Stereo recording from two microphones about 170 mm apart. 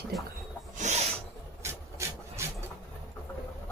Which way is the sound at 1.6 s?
15° right (ahead or behind).